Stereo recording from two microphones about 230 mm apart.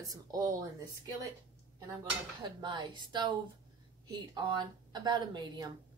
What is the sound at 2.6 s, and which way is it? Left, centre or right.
A woman's voice, right.